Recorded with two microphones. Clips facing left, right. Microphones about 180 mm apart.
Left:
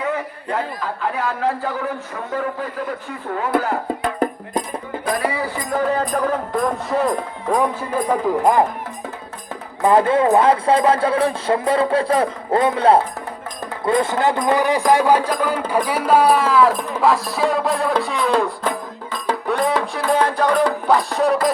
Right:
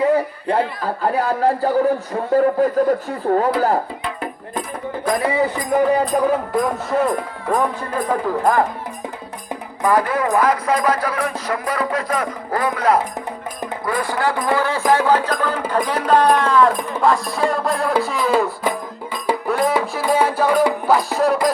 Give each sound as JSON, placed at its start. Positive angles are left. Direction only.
{"t": 0.0, "sound": "a sound", "side_deg": -35}
{"t": 1.0, "sound": "a man's voice", "side_deg": -40}
{"t": 4.0, "sound": "music", "side_deg": 40}
{"t": 5.7, "sound": "speech", "side_deg": -15}
{"t": 7.5, "sound": "speech", "side_deg": 10}
{"t": 9.8, "sound": "speech", "side_deg": 25}
{"t": 19.1, "sound": "music", "side_deg": 0}